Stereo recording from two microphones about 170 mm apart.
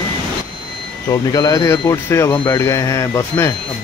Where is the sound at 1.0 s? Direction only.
20° left (ahead or behind).